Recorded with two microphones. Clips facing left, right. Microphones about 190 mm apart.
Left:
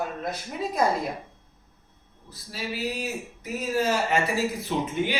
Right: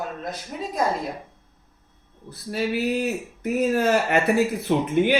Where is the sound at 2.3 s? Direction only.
60° right (ahead or behind).